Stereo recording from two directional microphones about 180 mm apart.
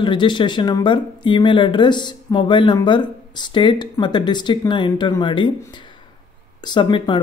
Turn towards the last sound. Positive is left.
turn(degrees=25)  # may be behind; listen again after turning